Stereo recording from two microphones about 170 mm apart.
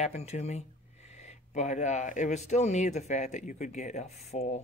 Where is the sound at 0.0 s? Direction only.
40° left (ahead or behind).